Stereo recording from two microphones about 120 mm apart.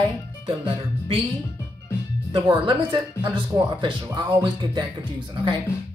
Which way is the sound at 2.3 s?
45° right (ahead or behind).